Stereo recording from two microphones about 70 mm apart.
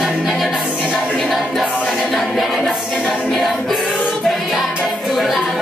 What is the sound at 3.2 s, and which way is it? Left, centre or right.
Music, centre.